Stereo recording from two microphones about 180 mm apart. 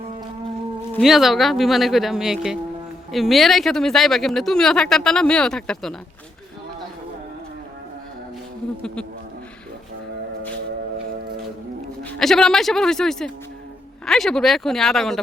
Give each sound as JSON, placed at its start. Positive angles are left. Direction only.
{"t": 0.9, "sound": "speech", "side_deg": 0}
{"t": 12.2, "sound": "speech", "side_deg": 5}